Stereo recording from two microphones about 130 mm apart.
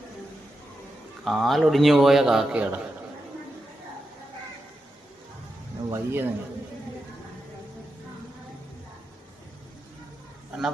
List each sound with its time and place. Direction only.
1.2 s a man's voice: centre (ahead or behind)
5.9 s a man's voice: 15° right (ahead or behind)